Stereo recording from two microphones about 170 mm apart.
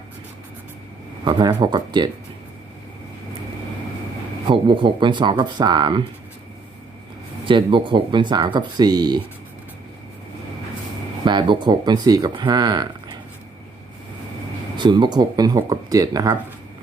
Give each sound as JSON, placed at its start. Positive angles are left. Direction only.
{"t": 1.2, "sound": "speech", "side_deg": -25}
{"t": 4.4, "sound": "speech", "side_deg": -30}
{"t": 7.4, "sound": "speech", "side_deg": -30}
{"t": 11.3, "sound": "speech", "side_deg": -25}
{"t": 14.8, "sound": "speech", "side_deg": -25}